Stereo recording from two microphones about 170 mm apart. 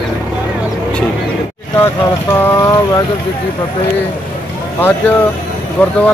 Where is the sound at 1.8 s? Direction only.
15° left (ahead or behind).